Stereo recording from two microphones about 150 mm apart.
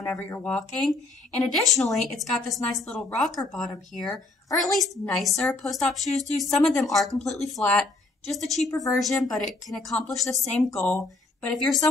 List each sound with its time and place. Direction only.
0.1 s speech: 15° left (ahead or behind)
8.6 s a woman's voice: 25° left (ahead or behind)
9.2 s speech: centre (ahead or behind)